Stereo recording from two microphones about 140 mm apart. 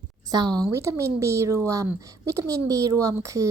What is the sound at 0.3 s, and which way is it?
A woman's voice, 30° right (ahead or behind).